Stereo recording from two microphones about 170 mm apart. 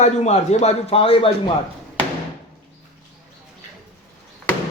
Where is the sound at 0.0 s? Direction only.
40° left (ahead or behind).